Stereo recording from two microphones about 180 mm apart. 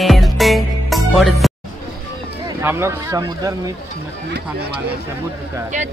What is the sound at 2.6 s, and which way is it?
Speech, 15° right (ahead or behind).